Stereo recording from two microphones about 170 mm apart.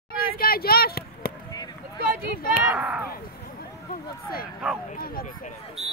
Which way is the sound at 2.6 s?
10° right (ahead or behind).